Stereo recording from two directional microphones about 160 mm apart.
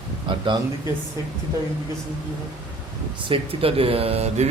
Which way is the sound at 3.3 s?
35° right (ahead or behind).